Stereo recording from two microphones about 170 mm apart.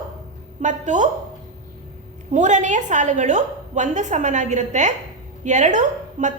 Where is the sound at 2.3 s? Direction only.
45° right (ahead or behind).